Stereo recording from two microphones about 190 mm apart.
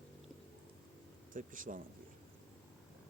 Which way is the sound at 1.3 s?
45° right (ahead or behind).